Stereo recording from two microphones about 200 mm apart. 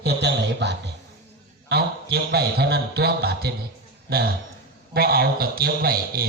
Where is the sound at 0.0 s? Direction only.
55° right (ahead or behind).